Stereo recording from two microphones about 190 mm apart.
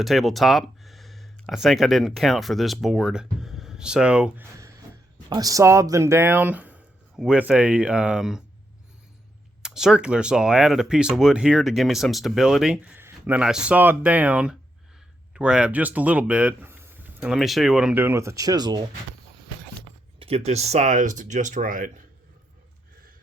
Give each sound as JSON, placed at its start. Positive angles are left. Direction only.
{"t": 0.0, "sound": "speech", "side_deg": 0}
{"t": 5.3, "sound": "speech", "side_deg": -20}
{"t": 9.6, "sound": "speech", "side_deg": -5}
{"t": 20.1, "sound": "speech", "side_deg": -30}